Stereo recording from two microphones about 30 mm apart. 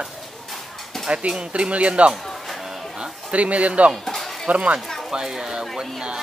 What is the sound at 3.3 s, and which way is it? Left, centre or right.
Speech, right.